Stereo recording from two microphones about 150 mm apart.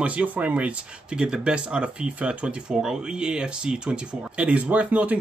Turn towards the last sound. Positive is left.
turn(degrees=-10)  # may be behind; listen again after turning